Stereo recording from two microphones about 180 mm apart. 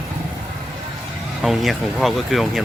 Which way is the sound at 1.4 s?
Centre (ahead or behind).